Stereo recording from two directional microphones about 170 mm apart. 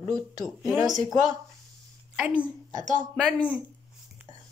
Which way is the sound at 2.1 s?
5° right (ahead or behind).